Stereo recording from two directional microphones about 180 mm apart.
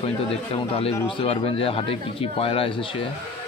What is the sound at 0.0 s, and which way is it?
Speech, 30° left (ahead or behind).